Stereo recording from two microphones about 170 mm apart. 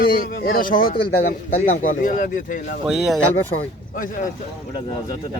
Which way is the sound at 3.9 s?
55° left (ahead or behind).